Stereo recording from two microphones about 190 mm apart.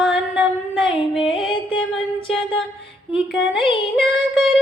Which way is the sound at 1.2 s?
25° left (ahead or behind).